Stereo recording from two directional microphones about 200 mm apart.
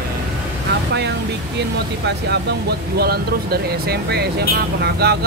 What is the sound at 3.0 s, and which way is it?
Speech, 50° right (ahead or behind).